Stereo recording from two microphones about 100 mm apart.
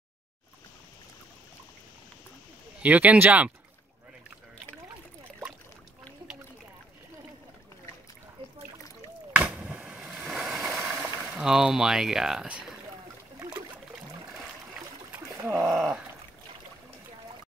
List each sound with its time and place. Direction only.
2.8 s speech: 15° right (ahead or behind)
9.3 s a sound: 15° right (ahead or behind)
10.0 s vehicle: 5° right (ahead or behind)
10.8 s speech: 15° right (ahead or behind)
13.4 s trickle: 35° right (ahead or behind)
15.4 s speech: 5° right (ahead or behind)